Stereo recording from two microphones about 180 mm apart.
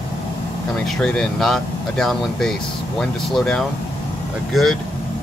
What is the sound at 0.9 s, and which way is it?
Speech, 5° left (ahead or behind).